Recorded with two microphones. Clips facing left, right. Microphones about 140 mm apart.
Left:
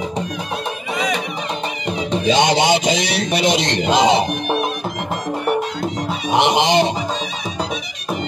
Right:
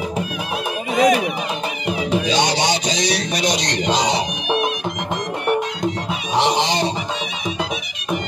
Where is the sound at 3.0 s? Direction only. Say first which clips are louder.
Left 2 dB; 25° left (ahead or behind).